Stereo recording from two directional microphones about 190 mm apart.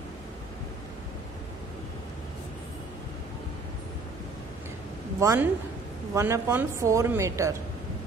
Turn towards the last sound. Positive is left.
turn(degrees=-15)  # may be behind; listen again after turning